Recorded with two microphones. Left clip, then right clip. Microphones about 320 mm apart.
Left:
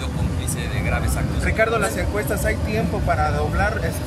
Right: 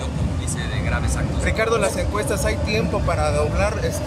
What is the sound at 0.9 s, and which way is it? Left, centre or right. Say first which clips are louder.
Speech: even; centre.